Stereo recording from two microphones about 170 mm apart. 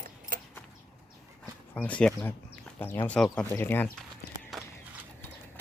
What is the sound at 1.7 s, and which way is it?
Speech, 10° left (ahead or behind).